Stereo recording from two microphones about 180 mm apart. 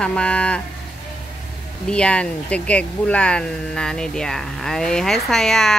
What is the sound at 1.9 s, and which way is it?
Speech, 5° left (ahead or behind).